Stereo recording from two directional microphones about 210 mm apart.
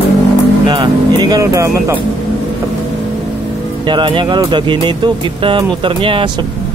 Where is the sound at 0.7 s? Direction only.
20° right (ahead or behind).